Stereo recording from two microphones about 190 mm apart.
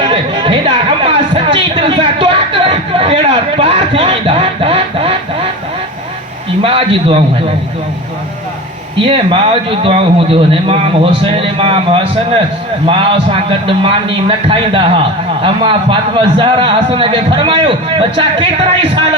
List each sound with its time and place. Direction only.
0.1 s a sound: 30° right (ahead or behind)
6.6 s a man's voice: 30° right (ahead or behind)
9.0 s a man's voice: 25° right (ahead or behind)